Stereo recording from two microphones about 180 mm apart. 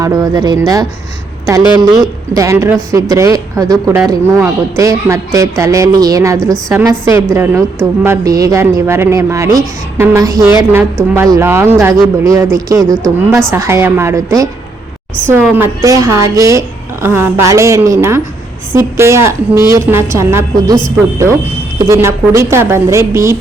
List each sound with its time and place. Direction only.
0.0 s a woman's voice: 20° right (ahead or behind)
6.4 s a woman's voice: 5° left (ahead or behind)
6.7 s speech: 15° right (ahead or behind)
12.8 s a woman's voice: 5° left (ahead or behind)
13.5 s speech: 15° right (ahead or behind)
15.5 s speech: 15° right (ahead or behind)
21.8 s speech: 15° right (ahead or behind)